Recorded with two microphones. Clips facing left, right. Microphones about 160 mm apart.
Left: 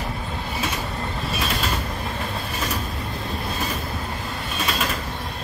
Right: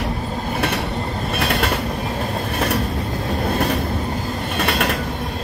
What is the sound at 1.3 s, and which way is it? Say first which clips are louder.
Train: right 6 dB; 65° right (ahead or behind).